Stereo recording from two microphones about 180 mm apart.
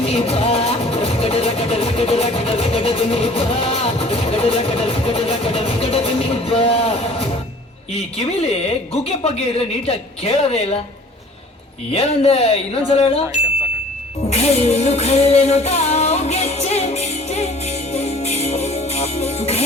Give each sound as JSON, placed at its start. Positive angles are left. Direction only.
{"t": 0.0, "sound": "music", "side_deg": 35}
{"t": 7.9, "sound": "a woman's voice", "side_deg": 35}
{"t": 11.9, "sound": "a woman's voice", "side_deg": 35}
{"t": 14.3, "sound": "music", "side_deg": 35}